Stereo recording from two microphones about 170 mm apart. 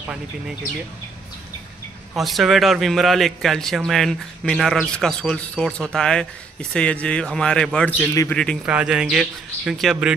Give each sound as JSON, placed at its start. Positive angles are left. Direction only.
{"t": 2.1, "sound": "a man's voice", "side_deg": 0}
{"t": 8.0, "sound": "a man's voice", "side_deg": 15}
{"t": 8.6, "sound": "a man's voice", "side_deg": -5}